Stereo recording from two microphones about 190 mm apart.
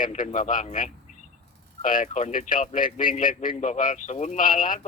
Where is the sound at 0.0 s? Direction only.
45° left (ahead or behind).